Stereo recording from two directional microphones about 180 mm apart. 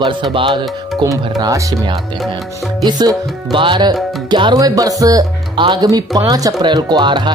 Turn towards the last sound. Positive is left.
turn(degrees=-25)  # may be behind; listen again after turning